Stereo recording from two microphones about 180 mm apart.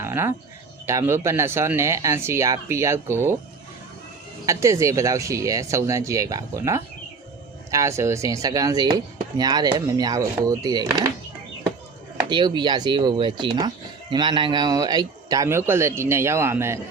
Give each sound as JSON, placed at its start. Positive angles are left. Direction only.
{"t": 0.0, "sound": "speech", "side_deg": -15}
{"t": 4.4, "sound": "speech", "side_deg": -15}
{"t": 12.3, "sound": "speech", "side_deg": -25}